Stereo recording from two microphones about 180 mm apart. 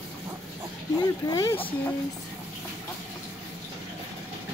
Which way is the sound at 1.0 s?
20° left (ahead or behind).